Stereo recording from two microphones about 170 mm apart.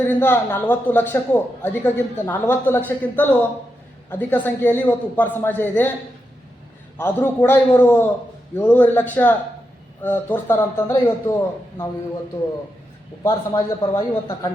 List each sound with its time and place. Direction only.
0.0 s a man's voice: 10° left (ahead or behind)
6.9 s a man's voice: 10° left (ahead or behind)
13.2 s speech: 20° left (ahead or behind)